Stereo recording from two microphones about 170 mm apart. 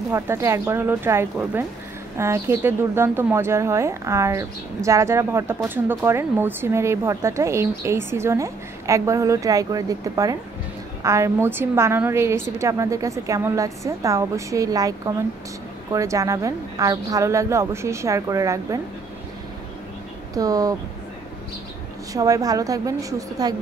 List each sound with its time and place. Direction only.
0.1 s a woman's voice: 15° right (ahead or behind)
20.3 s a woman's voice: 20° right (ahead or behind)
22.1 s a woman's voice: 20° right (ahead or behind)